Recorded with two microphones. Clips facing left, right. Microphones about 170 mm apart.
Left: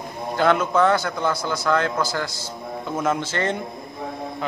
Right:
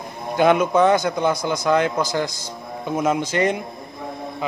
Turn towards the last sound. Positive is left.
turn(degrees=-15)  # may be behind; listen again after turning